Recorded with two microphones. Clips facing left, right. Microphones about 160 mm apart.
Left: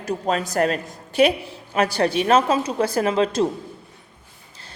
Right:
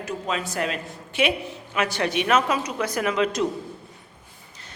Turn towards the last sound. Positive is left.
turn(degrees=30)  # may be behind; listen again after turning